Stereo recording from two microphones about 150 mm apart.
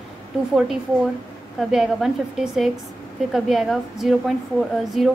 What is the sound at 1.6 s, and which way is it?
A woman's voice, centre (ahead or behind).